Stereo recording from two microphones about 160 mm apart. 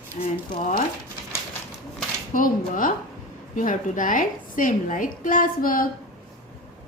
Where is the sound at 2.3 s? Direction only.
60° left (ahead or behind).